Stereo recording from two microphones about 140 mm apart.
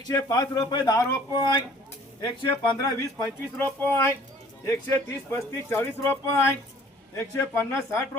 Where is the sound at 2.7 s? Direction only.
20° left (ahead or behind).